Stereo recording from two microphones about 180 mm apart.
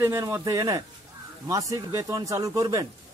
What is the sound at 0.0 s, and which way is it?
Speech, 15° right (ahead or behind).